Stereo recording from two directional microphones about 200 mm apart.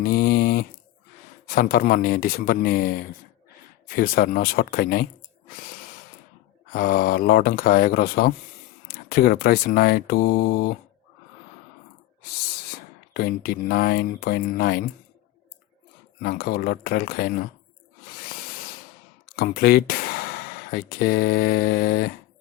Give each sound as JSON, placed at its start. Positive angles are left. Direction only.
{"t": 0.0, "sound": "a sound", "side_deg": 50}
{"t": 1.5, "sound": "speech", "side_deg": 45}
{"t": 6.7, "sound": "speech", "side_deg": 45}
{"t": 13.1, "sound": "speech", "side_deg": 50}
{"t": 16.2, "sound": "speech", "side_deg": 50}
{"t": 19.4, "sound": "speech", "side_deg": 50}